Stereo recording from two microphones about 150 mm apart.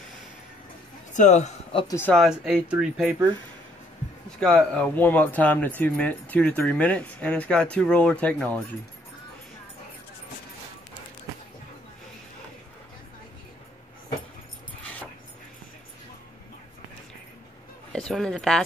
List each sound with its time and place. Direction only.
1.1 s a man's voice: 55° left (ahead or behind)
1.9 s speech: 15° left (ahead or behind)
2.1 s speech: 5° right (ahead or behind)
4.4 s speech: 5° left (ahead or behind)
17.9 s speech: 5° left (ahead or behind)